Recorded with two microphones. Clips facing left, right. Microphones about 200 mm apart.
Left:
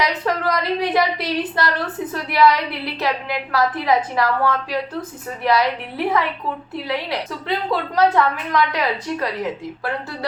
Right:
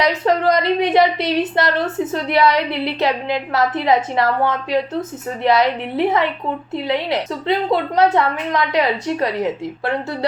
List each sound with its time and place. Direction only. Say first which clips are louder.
0.0 s a woman's voice: right 5 dB; 25° right (ahead or behind)